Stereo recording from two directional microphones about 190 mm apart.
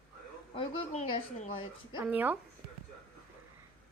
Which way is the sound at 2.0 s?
10° right (ahead or behind).